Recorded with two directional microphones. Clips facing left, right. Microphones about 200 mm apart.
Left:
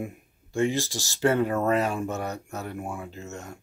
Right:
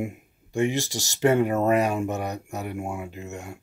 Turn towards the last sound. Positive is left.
turn(degrees=-10)  # may be behind; listen again after turning